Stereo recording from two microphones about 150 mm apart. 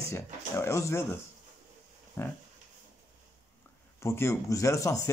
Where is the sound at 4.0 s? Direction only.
20° left (ahead or behind).